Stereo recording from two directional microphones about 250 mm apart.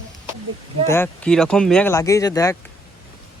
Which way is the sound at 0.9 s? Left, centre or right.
Centre.